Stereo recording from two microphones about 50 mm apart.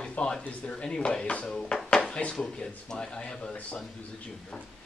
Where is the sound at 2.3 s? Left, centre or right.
Centre.